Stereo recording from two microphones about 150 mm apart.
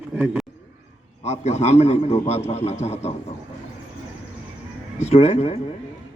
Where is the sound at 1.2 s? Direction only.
45° left (ahead or behind).